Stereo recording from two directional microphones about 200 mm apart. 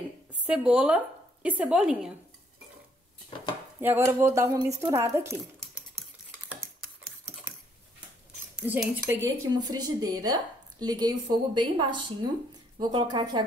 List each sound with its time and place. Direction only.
0.3 s a woman's voice: 5° right (ahead or behind)
3.8 s speech: 10° right (ahead or behind)
8.5 s speech: 5° right (ahead or behind)
9.2 s a woman's voice: 20° right (ahead or behind)